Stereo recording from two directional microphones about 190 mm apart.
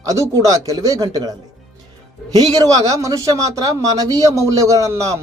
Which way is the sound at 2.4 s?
20° right (ahead or behind).